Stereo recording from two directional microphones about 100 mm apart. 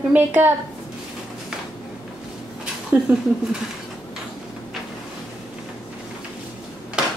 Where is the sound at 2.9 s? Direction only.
20° right (ahead or behind).